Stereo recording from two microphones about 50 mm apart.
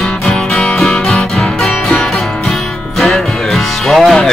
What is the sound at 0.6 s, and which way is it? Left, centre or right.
Music, centre.